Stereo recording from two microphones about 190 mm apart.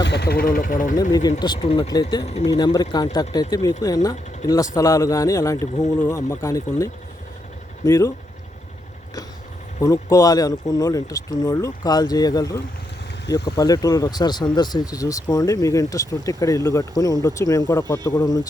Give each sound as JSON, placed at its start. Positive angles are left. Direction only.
{"t": 0.0, "sound": "speech", "side_deg": 60}
{"t": 1.4, "sound": "speech", "side_deg": 20}
{"t": 1.6, "sound": "speech", "side_deg": 30}
{"t": 1.9, "sound": "speech", "side_deg": 20}
{"t": 2.2, "sound": "speech", "side_deg": 35}
{"t": 2.5, "sound": "speech", "side_deg": 20}
{"t": 9.8, "sound": "speech", "side_deg": 15}